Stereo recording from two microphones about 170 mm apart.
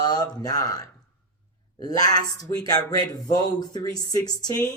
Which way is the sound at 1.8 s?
20° left (ahead or behind).